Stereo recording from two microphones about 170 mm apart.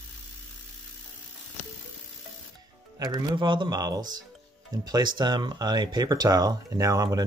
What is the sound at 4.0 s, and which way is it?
Speech, 50° right (ahead or behind).